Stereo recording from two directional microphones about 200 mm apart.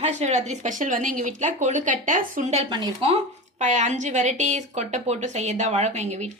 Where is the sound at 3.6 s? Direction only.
35° right (ahead or behind).